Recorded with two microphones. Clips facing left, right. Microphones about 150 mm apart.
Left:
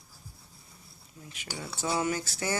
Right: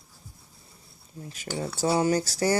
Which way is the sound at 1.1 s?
35° right (ahead or behind).